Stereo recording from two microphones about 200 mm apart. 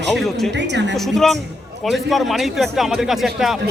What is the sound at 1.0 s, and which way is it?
A man's voice, centre (ahead or behind).